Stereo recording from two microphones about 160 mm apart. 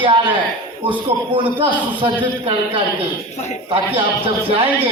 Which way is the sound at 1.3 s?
30° right (ahead or behind).